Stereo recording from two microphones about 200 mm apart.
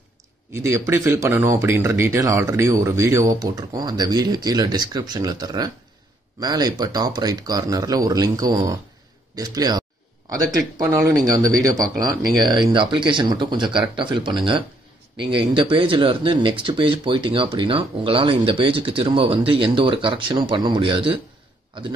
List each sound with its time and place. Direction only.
0.5 s speech: 15° right (ahead or behind)